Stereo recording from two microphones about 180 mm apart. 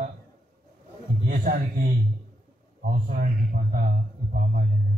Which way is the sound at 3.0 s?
50° right (ahead or behind).